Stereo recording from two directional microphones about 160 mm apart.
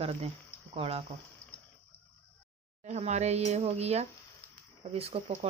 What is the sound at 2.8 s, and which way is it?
Speech, 45° right (ahead or behind).